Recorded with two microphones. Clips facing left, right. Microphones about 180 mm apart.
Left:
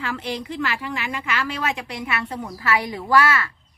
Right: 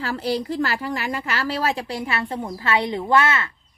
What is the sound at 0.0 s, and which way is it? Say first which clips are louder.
Speech: right 4 dB; 35° right (ahead or behind).